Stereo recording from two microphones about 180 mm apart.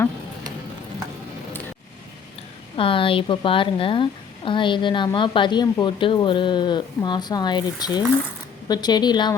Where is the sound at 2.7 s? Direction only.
30° left (ahead or behind).